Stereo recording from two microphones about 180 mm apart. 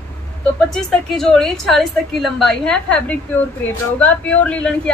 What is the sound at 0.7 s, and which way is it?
A woman's voice, centre (ahead or behind).